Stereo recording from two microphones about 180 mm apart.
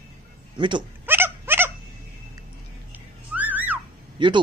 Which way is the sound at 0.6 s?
25° right (ahead or behind).